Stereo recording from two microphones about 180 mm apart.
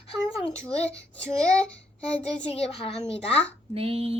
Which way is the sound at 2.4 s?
35° left (ahead or behind).